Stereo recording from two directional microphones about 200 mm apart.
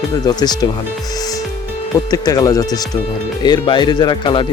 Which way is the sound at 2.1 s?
20° left (ahead or behind).